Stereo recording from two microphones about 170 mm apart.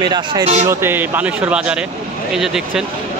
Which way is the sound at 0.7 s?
15° right (ahead or behind).